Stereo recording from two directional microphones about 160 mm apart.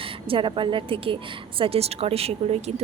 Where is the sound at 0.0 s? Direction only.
35° right (ahead or behind).